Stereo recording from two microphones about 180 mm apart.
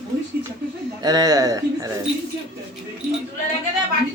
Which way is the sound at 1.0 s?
20° right (ahead or behind).